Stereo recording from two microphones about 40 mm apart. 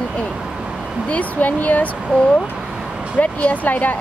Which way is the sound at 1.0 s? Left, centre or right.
Left.